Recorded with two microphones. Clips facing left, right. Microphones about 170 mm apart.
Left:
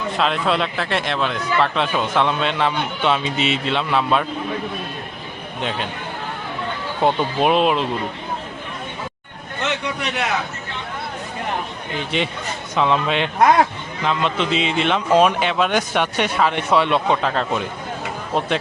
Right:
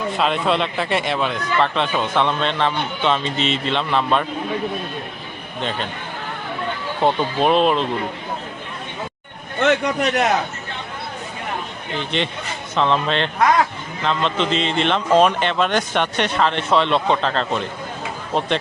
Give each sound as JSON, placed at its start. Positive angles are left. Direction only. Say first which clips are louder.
{"t": 0.2, "sound": "speech", "louder": "even", "side_deg": 0}
{"t": 5.6, "sound": "speech", "louder": "even", "side_deg": 5}
{"t": 7.0, "sound": "speech", "louder": "even", "side_deg": 5}
{"t": 9.6, "sound": "a man's voice", "louder": "right 7 dB", "side_deg": -50}
{"t": 12.1, "sound": "a man's voice", "louder": "left 2 dB", "side_deg": 5}